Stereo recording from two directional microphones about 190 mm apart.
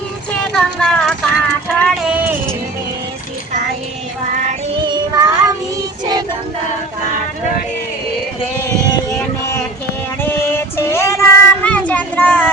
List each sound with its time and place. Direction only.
0.5 s a sound: 5° left (ahead or behind)
4.9 s music: 20° right (ahead or behind)
10.2 s child singing: 10° left (ahead or behind)